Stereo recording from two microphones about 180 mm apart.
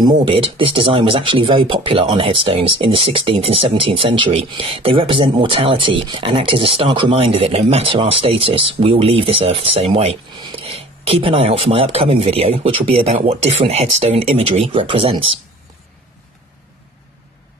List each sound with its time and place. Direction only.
0.2 s speech: 30° right (ahead or behind)